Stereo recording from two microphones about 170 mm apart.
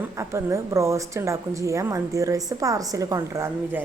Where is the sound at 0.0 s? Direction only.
15° right (ahead or behind).